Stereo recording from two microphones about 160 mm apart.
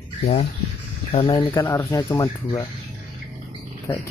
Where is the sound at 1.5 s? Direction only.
15° left (ahead or behind).